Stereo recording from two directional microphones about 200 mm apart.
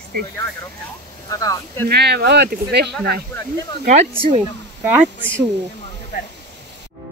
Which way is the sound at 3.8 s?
35° right (ahead or behind).